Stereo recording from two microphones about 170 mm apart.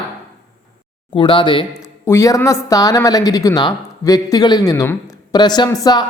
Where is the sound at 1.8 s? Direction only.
15° left (ahead or behind).